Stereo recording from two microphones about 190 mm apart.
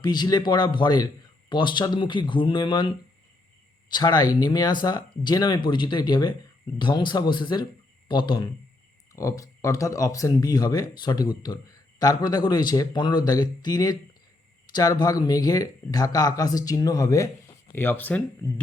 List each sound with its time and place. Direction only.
0.0 s speech: 20° left (ahead or behind)
3.9 s speech: 20° left (ahead or behind)